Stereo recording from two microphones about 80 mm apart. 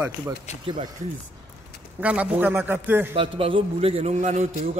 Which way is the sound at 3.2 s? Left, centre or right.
Right.